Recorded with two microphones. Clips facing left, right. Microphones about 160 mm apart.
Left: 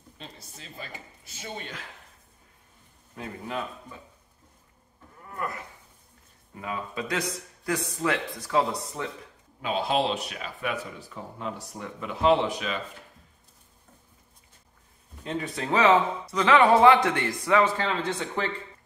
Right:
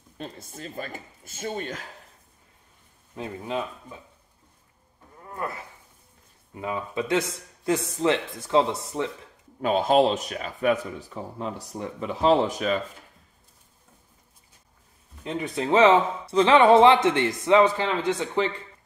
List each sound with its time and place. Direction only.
0.2 s speech: 50° right (ahead or behind)
3.2 s speech: 25° right (ahead or behind)
6.5 s speech: 20° right (ahead or behind)
9.6 s speech: 45° right (ahead or behind)
15.2 s speech: 20° right (ahead or behind)